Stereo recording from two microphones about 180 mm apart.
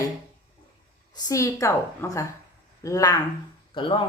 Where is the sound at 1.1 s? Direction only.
20° left (ahead or behind).